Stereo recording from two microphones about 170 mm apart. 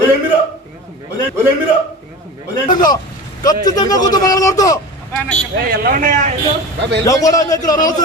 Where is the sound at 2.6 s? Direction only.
25° left (ahead or behind).